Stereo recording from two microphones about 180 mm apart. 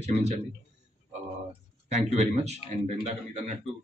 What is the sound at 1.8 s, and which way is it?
Speech, 40° right (ahead or behind).